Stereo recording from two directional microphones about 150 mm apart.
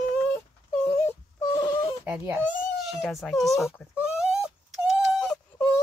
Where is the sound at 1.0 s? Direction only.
20° left (ahead or behind).